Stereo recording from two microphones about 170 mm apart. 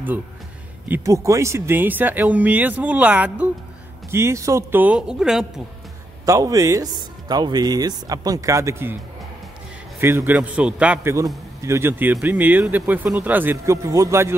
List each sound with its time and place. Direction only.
0.8 s speech: 15° right (ahead or behind)
6.2 s speech: 20° right (ahead or behind)
9.9 s speech: 15° right (ahead or behind)